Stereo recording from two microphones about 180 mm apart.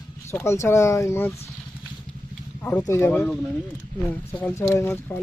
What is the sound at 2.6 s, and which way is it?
Speech, 10° left (ahead or behind).